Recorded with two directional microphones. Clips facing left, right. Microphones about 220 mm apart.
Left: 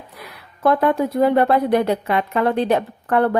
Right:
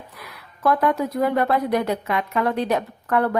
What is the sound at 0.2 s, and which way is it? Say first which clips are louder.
A woman's voice: left 4 dB; 30° left (ahead or behind).